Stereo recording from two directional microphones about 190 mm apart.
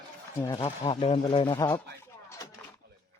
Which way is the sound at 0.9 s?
30° left (ahead or behind).